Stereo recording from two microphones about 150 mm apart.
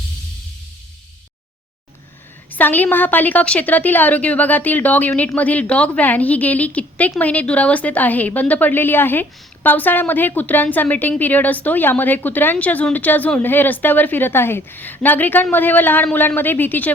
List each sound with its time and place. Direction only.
2.5 s a woman's voice: 10° left (ahead or behind)